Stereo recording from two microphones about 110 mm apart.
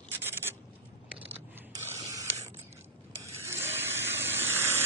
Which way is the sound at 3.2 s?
20° right (ahead or behind).